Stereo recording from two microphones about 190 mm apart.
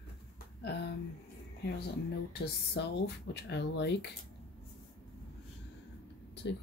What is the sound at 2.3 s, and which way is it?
Speech, 65° left (ahead or behind).